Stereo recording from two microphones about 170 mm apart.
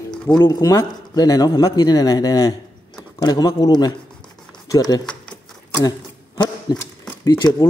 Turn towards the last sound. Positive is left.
turn(degrees=15)  # may be behind; listen again after turning